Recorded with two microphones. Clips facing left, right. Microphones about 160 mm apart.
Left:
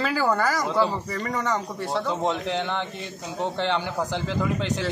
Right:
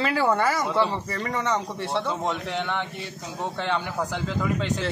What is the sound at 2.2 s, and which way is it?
Speech, 25° left (ahead or behind).